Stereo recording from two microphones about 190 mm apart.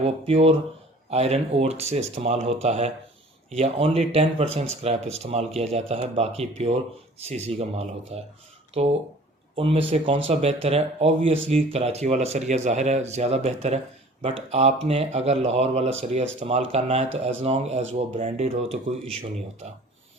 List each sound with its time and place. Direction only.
0.0 s speech: 30° right (ahead or behind)